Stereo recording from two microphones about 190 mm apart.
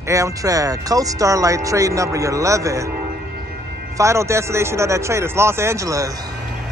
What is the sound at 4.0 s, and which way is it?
Speech, 15° right (ahead or behind).